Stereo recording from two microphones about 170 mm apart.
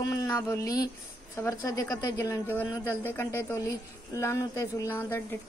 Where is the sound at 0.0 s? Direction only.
20° left (ahead or behind).